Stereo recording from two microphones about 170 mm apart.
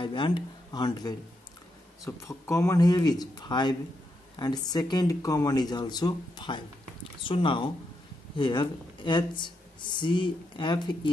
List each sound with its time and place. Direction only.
0.0 s speech: 30° left (ahead or behind)